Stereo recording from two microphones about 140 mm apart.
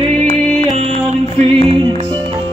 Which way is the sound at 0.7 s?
55° right (ahead or behind).